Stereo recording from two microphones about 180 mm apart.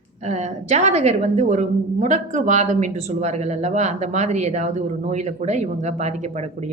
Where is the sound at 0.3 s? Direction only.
40° right (ahead or behind).